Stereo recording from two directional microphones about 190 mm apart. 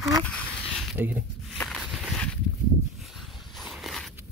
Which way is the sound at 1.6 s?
Centre (ahead or behind).